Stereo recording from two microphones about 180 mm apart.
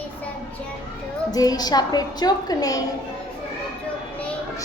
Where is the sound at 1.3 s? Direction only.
20° left (ahead or behind).